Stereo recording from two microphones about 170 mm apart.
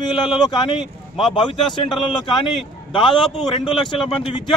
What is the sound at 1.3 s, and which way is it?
Speech, 25° left (ahead or behind).